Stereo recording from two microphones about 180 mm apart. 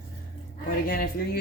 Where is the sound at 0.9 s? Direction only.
55° left (ahead or behind).